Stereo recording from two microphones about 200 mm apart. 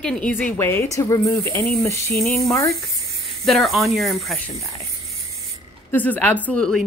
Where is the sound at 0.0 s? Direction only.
5° left (ahead or behind).